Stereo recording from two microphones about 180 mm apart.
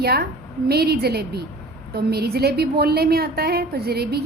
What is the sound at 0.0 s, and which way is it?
A woman's voice, 60° right (ahead or behind).